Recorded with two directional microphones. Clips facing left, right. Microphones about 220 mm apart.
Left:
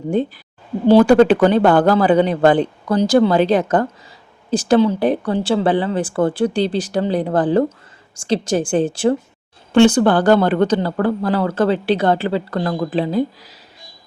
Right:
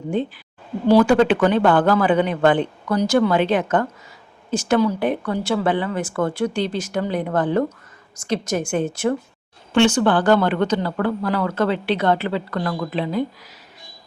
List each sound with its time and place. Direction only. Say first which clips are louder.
0.9 s speech: left 4 dB; 35° left (ahead or behind)